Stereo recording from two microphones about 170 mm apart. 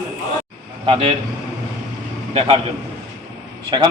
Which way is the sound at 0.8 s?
30° right (ahead or behind).